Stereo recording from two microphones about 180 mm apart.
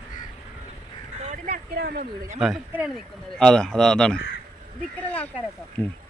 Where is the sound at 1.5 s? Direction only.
60° right (ahead or behind).